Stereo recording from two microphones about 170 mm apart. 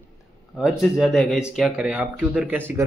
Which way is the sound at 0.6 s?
5° right (ahead or behind).